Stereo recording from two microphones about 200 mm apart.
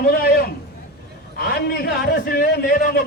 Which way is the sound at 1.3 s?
50° left (ahead or behind).